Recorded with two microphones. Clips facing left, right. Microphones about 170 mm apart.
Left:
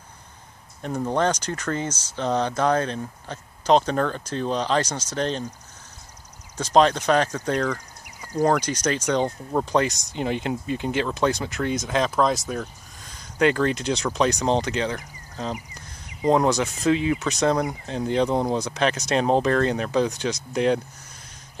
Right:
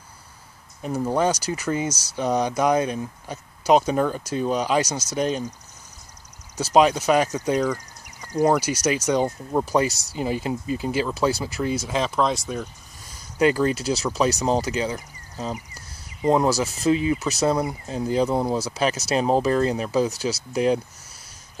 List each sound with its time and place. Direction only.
0.8 s speech: 5° right (ahead or behind)
6.5 s speech: 10° right (ahead or behind)
15.5 s a sound: 15° left (ahead or behind)
16.3 s speech: 5° right (ahead or behind)